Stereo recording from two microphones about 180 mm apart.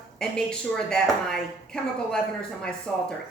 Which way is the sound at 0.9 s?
5° left (ahead or behind).